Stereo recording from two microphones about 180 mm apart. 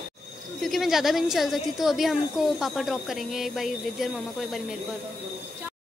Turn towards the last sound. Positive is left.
turn(degrees=0)  # may be behind; listen again after turning